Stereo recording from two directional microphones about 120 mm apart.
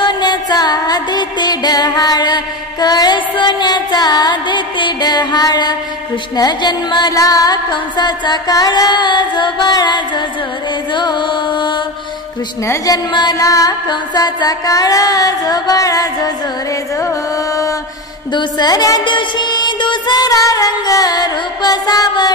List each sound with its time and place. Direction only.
0.0 s music: 35° left (ahead or behind)
12.6 s music: 30° left (ahead or behind)
18.3 s music: 35° left (ahead or behind)